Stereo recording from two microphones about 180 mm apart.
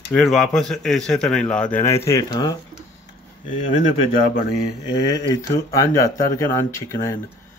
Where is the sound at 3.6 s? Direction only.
30° left (ahead or behind).